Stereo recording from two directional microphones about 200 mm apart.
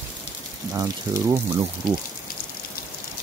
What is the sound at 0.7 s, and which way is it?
Speech, 15° right (ahead or behind).